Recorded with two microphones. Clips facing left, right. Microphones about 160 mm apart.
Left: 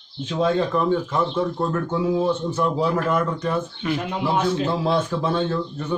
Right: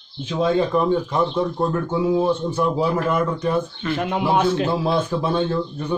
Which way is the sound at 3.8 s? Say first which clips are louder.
Even; 15° left (ahead or behind).